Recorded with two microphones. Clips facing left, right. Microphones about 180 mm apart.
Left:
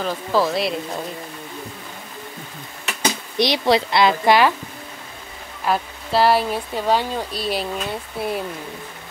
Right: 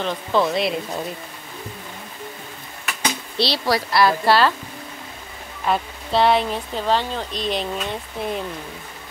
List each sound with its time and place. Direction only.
0.0 s speech: 5° left (ahead or behind)
3.3 s speech: 15° left (ahead or behind)
5.7 s speech: 5° left (ahead or behind)